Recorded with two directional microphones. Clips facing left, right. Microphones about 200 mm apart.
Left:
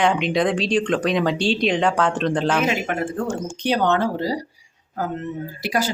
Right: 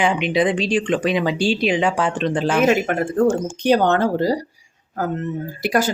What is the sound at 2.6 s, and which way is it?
Speech, 50° right (ahead or behind).